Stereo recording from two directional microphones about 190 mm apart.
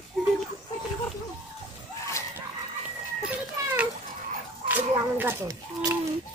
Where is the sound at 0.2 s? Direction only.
Centre (ahead or behind).